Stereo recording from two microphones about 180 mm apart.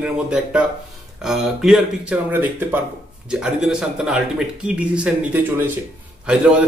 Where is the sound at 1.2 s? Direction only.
5° right (ahead or behind).